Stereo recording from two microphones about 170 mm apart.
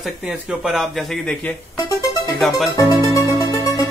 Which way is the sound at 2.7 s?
20° left (ahead or behind).